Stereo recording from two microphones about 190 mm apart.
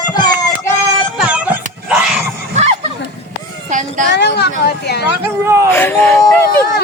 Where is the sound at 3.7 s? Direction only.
40° right (ahead or behind).